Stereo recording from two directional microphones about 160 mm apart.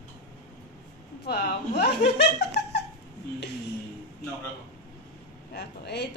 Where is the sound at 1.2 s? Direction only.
90° left.